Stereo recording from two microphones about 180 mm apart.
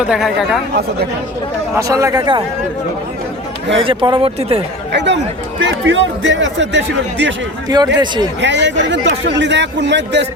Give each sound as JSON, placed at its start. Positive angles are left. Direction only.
{"t": 0.1, "sound": "speech", "side_deg": 0}
{"t": 1.7, "sound": "speech", "side_deg": -15}
{"t": 3.8, "sound": "speech", "side_deg": -30}
{"t": 4.9, "sound": "speech", "side_deg": -75}
{"t": 7.9, "sound": "speech", "side_deg": -20}
{"t": 8.4, "sound": "a man's voice", "side_deg": -80}